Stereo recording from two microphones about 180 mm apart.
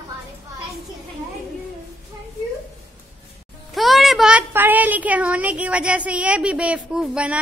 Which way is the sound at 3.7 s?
Centre (ahead or behind).